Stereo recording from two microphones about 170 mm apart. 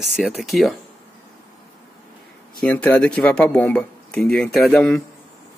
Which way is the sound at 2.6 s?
5° left (ahead or behind).